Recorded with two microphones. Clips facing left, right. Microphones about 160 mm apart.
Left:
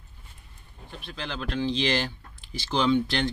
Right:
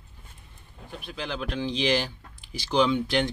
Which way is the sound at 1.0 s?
10° right (ahead or behind).